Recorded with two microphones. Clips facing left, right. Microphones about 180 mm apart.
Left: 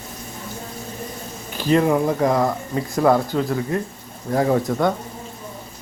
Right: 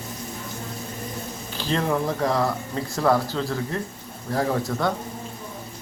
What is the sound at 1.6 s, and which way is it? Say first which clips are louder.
Speech: left 7 dB; 15° left (ahead or behind).